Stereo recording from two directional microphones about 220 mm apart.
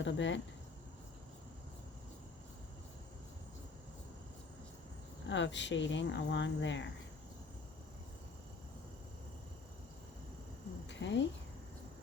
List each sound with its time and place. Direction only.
0.0 s speech: 55° left (ahead or behind)
5.3 s speech: 55° left (ahead or behind)
10.8 s a sound: 55° left (ahead or behind)